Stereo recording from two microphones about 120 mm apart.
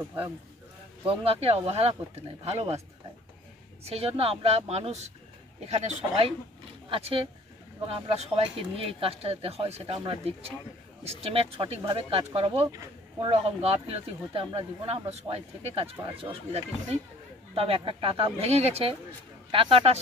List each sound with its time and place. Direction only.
1.0 s speech: 50° right (ahead or behind)
3.8 s speech: 60° right (ahead or behind)
6.9 s speech: 50° right (ahead or behind)